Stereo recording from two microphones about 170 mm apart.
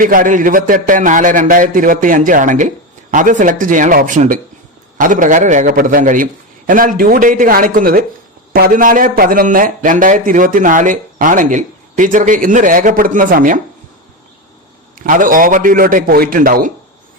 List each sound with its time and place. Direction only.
0.0 s a man's voice: 55° right (ahead or behind)
14.9 s a man's voice: 55° right (ahead or behind)